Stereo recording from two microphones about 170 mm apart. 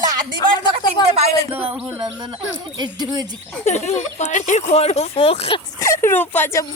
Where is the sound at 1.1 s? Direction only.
35° right (ahead or behind).